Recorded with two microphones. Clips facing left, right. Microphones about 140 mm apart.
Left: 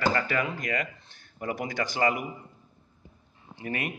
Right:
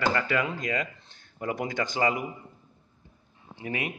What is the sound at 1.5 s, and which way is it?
Speech, 20° right (ahead or behind).